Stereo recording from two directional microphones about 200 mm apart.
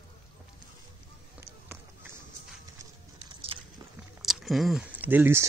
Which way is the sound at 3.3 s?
25° right (ahead or behind).